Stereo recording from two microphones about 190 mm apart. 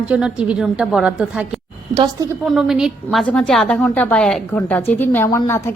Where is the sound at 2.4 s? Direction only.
Centre (ahead or behind).